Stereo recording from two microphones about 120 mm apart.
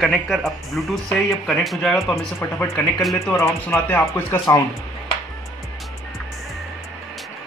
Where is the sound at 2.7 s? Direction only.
Centre (ahead or behind).